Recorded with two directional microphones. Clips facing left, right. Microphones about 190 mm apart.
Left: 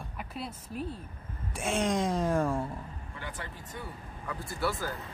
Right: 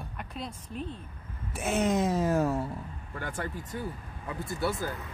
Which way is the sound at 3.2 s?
45° right (ahead or behind).